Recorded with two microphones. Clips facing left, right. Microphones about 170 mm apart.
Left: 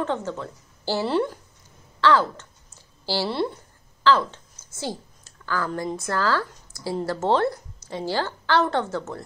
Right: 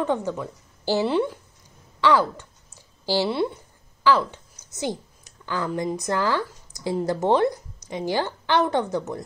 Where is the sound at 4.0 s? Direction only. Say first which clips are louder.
Even; 10° right (ahead or behind).